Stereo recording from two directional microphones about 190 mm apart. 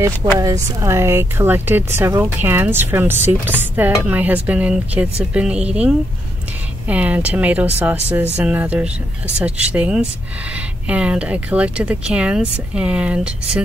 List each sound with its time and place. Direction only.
0.4 s speech: 15° right (ahead or behind)